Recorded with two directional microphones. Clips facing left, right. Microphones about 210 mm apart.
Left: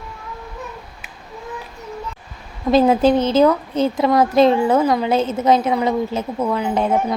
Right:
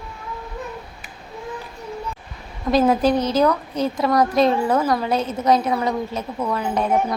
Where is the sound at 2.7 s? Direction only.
25° left (ahead or behind).